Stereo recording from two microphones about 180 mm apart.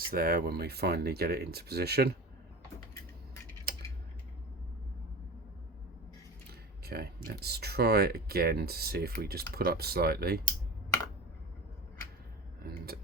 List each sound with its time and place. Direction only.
0.1 s speech: 55° right (ahead or behind)
6.5 s speech: 60° right (ahead or behind)
12.6 s speech: 55° right (ahead or behind)